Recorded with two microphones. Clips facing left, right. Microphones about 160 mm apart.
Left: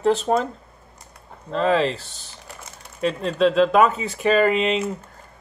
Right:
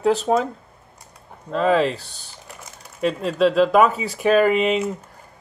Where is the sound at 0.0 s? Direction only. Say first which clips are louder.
Right 1 dB; centre (ahead or behind).